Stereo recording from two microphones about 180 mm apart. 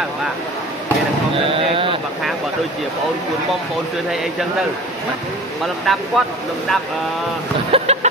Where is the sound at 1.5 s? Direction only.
30° right (ahead or behind).